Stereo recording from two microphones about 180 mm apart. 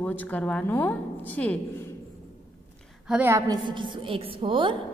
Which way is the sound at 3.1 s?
15° right (ahead or behind).